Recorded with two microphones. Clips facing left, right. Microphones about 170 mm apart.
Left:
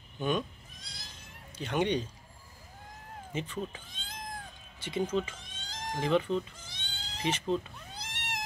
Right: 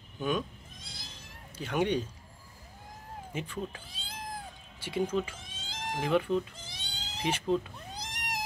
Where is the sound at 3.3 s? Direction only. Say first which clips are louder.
Left 2 dB; 10° right (ahead or behind).